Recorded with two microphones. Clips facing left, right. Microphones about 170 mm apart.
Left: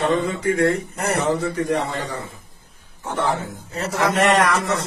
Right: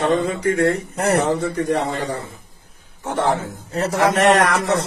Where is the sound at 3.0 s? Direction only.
75° right (ahead or behind).